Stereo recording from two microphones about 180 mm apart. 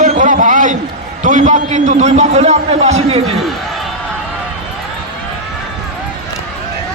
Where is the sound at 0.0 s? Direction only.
45° right (ahead or behind).